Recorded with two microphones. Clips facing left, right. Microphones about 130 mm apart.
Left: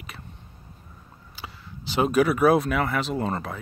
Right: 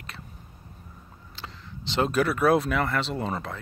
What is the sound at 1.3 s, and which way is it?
Speech, 5° left (ahead or behind).